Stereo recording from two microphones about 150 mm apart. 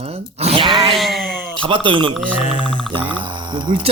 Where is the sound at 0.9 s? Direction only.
Centre (ahead or behind).